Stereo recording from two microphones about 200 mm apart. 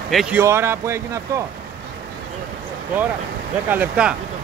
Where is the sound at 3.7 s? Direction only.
5° right (ahead or behind).